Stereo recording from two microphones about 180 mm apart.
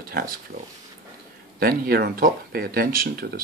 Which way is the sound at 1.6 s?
55° right (ahead or behind).